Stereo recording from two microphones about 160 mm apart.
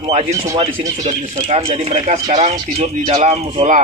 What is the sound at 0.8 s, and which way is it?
Speech, 25° right (ahead or behind).